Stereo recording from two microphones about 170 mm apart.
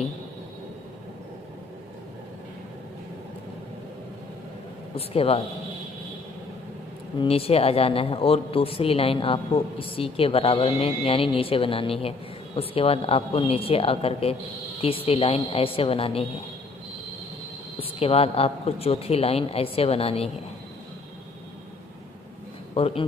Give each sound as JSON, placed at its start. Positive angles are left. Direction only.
{"t": 4.9, "sound": "a man's voice", "side_deg": 35}
{"t": 7.2, "sound": "a man's voice", "side_deg": 35}
{"t": 17.7, "sound": "a man's voice", "side_deg": 35}
{"t": 22.8, "sound": "a man's voice", "side_deg": 35}